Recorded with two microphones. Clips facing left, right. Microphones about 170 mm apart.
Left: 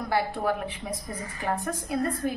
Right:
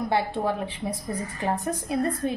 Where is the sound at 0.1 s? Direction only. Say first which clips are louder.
Left 1 dB; 25° right (ahead or behind).